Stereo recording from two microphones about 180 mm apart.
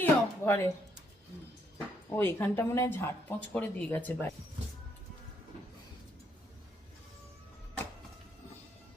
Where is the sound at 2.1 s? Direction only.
10° left (ahead or behind).